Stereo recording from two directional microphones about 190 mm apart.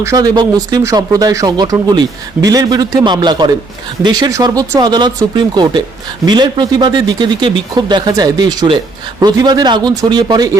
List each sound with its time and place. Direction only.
0.0 s speech: 20° right (ahead or behind)